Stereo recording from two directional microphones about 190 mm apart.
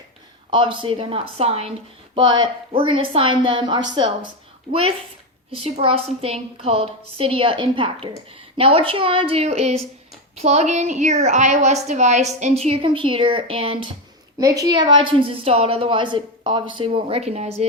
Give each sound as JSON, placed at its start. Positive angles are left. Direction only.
{"t": 0.5, "sound": "a woman's voice", "side_deg": -25}
{"t": 14.3, "sound": "a woman's voice", "side_deg": -20}